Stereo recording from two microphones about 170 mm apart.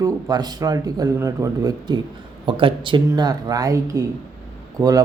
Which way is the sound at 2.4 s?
30° right (ahead or behind).